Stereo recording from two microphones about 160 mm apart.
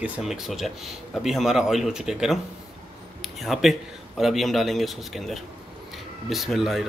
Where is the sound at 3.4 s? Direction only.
Centre (ahead or behind).